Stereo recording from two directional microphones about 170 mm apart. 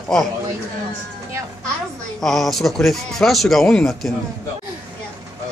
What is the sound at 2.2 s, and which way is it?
Speech, centre (ahead or behind).